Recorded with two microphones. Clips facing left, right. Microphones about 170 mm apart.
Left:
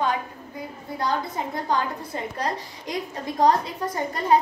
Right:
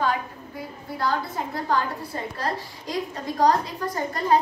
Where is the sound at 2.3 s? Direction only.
20° left (ahead or behind).